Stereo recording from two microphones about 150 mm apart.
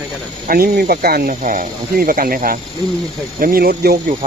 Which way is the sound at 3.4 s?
85° right.